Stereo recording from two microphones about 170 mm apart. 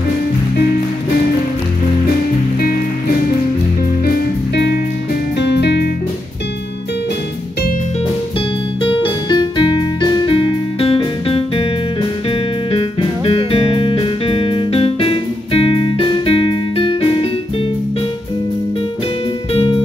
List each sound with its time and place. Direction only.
4.0 s music: 70° left (ahead or behind)
5.4 s music: 85° left
8.8 s keyboard: 30° left (ahead or behind)
19.5 s music: 30° left (ahead or behind)